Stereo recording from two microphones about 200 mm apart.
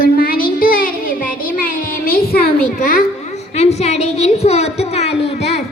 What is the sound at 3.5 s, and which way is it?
A woman's voice, 30° left (ahead or behind).